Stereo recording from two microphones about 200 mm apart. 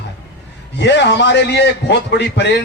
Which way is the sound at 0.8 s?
60° left (ahead or behind).